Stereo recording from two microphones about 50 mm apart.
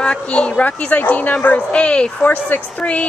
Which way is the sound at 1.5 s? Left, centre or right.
Left.